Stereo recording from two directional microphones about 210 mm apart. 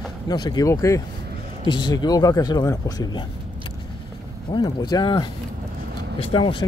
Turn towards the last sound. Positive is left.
turn(degrees=25)  # may be behind; listen again after turning